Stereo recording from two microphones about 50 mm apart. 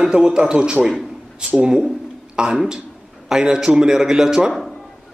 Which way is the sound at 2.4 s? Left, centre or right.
Centre.